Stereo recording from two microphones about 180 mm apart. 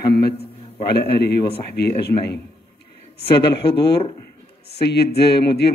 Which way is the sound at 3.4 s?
65° left (ahead or behind).